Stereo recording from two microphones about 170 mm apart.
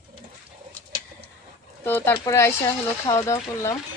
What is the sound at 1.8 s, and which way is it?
Speech, 15° left (ahead or behind).